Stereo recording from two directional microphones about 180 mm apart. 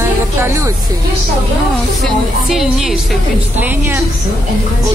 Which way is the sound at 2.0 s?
Centre (ahead or behind).